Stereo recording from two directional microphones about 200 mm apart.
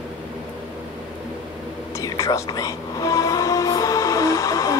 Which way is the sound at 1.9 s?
15° left (ahead or behind).